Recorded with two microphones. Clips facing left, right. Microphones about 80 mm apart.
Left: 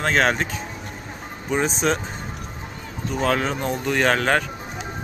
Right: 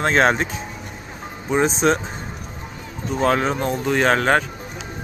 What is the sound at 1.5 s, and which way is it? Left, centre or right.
Speech, centre.